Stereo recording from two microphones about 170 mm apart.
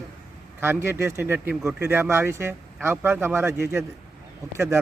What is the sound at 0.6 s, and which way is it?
Speech, 15° right (ahead or behind).